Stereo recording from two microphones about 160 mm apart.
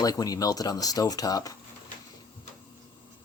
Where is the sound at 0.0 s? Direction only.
25° left (ahead or behind).